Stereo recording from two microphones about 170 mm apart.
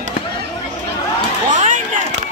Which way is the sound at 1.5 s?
45° right (ahead or behind).